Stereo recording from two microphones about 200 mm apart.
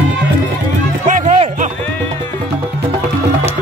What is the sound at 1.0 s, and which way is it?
Music, 30° right (ahead or behind).